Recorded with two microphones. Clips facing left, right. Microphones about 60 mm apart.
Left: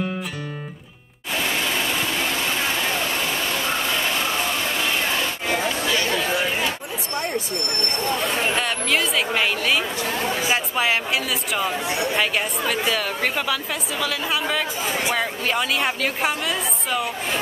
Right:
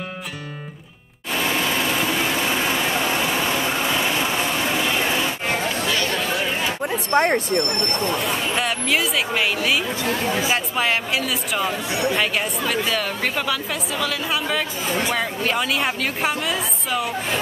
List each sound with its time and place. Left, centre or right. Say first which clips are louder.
1.4 s vehicle: right 2 dB; centre
5.9 s chatter: even; centre
7.1 s speech: right 8 dB; right
8.5 s speech: right 1 dB; centre